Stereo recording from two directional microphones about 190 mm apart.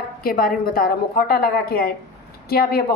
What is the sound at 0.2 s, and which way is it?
A woman's voice, 50° left (ahead or behind).